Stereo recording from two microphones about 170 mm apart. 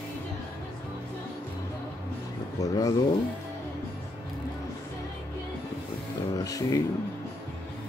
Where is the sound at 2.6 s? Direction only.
20° left (ahead or behind).